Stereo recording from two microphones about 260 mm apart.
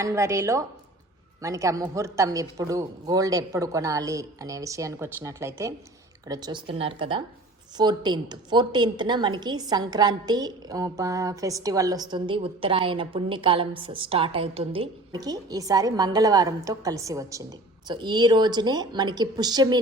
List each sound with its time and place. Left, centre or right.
0.0 s a woman's voice: centre